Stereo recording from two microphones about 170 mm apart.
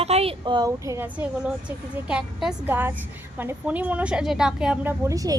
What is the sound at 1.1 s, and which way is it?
A woman's voice, 10° right (ahead or behind).